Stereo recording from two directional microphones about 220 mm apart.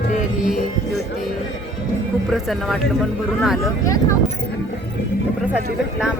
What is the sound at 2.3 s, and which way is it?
Speech, centre (ahead or behind).